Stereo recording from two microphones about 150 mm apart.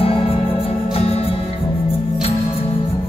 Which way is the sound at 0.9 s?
40° left (ahead or behind).